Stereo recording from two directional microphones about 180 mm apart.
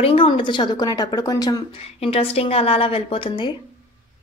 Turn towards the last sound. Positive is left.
turn(degrees=25)  # may be behind; listen again after turning